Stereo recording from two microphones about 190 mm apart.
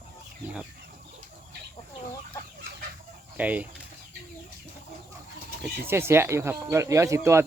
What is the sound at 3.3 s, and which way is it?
Speech, 10° right (ahead or behind).